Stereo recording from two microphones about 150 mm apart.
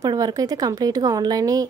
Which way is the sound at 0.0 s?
25° right (ahead or behind).